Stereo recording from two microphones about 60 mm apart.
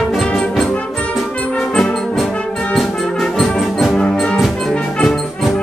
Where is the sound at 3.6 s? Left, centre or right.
Centre.